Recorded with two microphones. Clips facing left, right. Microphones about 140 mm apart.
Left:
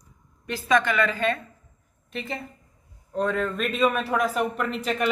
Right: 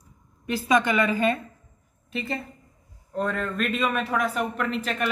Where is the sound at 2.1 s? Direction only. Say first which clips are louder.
Right 2 dB; centre (ahead or behind).